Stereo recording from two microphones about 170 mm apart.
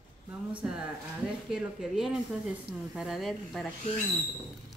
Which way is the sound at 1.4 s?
Centre (ahead or behind).